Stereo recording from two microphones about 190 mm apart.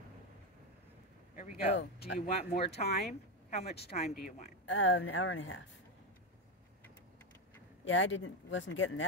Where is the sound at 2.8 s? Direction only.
45° left (ahead or behind).